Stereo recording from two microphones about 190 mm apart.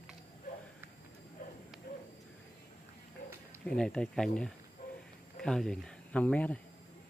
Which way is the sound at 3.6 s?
5° left (ahead or behind).